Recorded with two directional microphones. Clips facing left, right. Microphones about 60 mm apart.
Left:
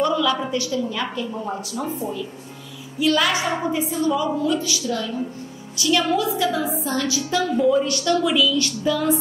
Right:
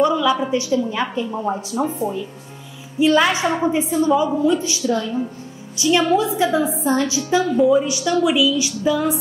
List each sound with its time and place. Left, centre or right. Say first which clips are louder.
0.0 s a woman's voice: right 3 dB; centre